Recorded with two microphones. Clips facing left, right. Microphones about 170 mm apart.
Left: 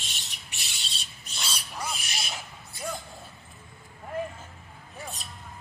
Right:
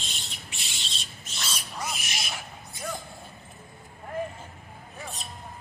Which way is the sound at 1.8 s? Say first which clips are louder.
Even; 30° left (ahead or behind).